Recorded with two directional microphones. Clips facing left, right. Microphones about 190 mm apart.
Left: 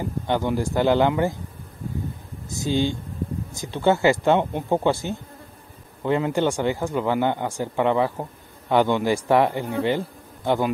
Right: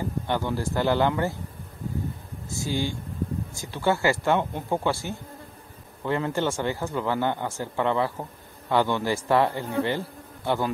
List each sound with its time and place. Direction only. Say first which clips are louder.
0.3 s speech: left 5 dB; 15° left (ahead or behind)
2.5 s speech: left 5 dB; 20° left (ahead or behind)